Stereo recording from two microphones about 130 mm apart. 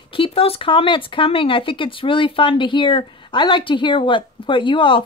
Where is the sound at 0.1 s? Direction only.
45° left (ahead or behind).